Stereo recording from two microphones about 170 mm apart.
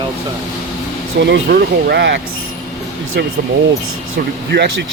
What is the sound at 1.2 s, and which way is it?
Speech, 85° right.